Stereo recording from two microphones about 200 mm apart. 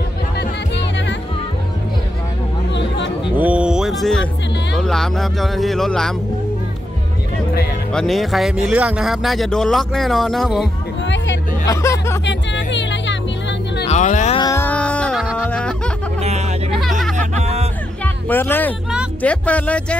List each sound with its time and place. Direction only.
2.7 s a sound: 60° left (ahead or behind)
3.3 s music: 5° right (ahead or behind)
4.7 s speech: centre (ahead or behind)
7.9 s speech: centre (ahead or behind)
11.6 s speech: 15° left (ahead or behind)
12.3 s music: 65° left (ahead or behind)
13.8 s speech: 35° left (ahead or behind)
14.3 s music: 15° left (ahead or behind)
16.2 s a sound: 35° right (ahead or behind)
17.2 s music: 35° right (ahead or behind)
18.0 s speech: 10° left (ahead or behind)